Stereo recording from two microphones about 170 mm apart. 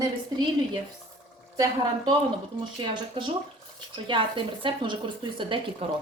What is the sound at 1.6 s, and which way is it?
A woman's voice, 25° right (ahead or behind).